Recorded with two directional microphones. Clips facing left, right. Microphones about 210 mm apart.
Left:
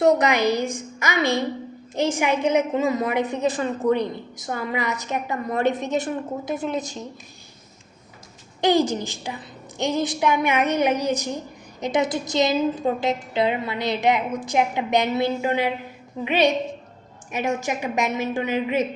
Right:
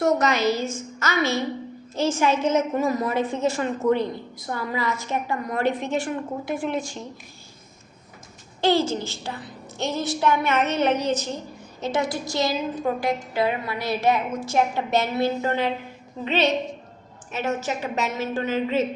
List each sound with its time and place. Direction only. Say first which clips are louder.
0.0 s a woman's voice: left 3 dB; 15° left (ahead or behind)
8.6 s a woman's voice: left 2 dB; 15° left (ahead or behind)